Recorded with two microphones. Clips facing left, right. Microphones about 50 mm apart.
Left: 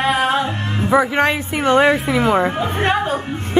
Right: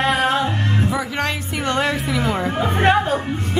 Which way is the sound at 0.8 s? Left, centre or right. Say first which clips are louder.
Left 7 dB; left.